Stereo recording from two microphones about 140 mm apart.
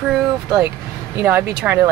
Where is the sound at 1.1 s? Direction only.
15° right (ahead or behind).